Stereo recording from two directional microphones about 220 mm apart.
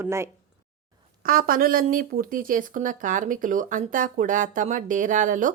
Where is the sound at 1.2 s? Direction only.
40° right (ahead or behind).